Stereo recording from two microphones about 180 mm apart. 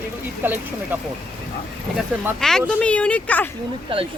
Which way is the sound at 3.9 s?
30° right (ahead or behind).